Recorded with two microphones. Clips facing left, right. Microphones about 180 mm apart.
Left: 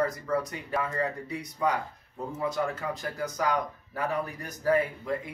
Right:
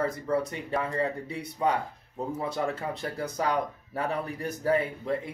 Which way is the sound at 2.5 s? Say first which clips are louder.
Even; 30° right (ahead or behind).